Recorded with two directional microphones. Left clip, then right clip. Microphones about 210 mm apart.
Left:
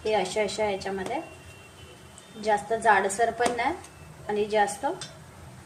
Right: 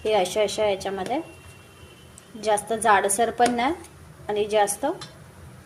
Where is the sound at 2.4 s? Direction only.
35° right (ahead or behind).